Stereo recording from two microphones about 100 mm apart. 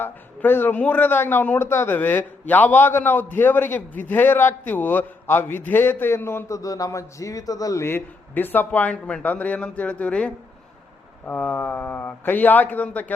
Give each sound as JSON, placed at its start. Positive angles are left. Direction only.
{"t": 0.0, "sound": "a man's voice", "side_deg": 20}